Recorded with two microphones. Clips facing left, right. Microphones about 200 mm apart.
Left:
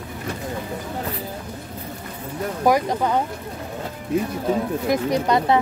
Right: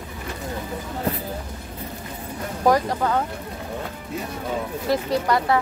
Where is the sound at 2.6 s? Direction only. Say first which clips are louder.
Even; 15° left (ahead or behind).